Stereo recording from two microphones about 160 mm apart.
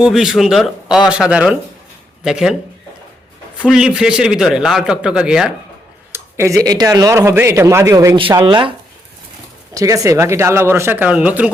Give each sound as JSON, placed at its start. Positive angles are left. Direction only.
{"t": 0.0, "sound": "a man's voice", "side_deg": -5}
{"t": 3.6, "sound": "a man's voice", "side_deg": -5}
{"t": 6.1, "sound": "speech", "side_deg": -15}
{"t": 9.7, "sound": "speech", "side_deg": -20}